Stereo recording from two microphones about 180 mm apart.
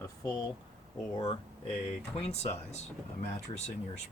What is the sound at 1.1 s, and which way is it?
Speech, 30° left (ahead or behind).